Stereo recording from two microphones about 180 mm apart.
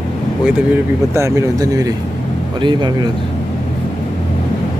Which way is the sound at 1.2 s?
15° right (ahead or behind).